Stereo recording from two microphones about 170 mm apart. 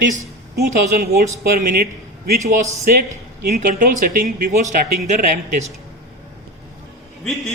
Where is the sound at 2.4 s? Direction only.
20° right (ahead or behind).